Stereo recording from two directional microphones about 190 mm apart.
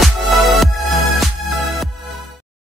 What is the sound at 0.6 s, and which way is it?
Music, centre (ahead or behind).